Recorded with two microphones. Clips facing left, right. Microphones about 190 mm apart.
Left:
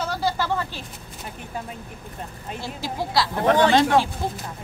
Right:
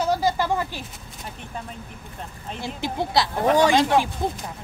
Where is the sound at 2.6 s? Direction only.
20° right (ahead or behind).